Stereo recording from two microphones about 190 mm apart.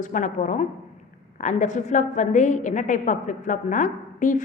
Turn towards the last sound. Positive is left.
turn(degrees=40)  # may be behind; listen again after turning